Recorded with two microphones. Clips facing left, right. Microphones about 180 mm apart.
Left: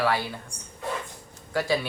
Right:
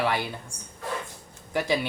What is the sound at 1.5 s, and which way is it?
Speech, 20° right (ahead or behind).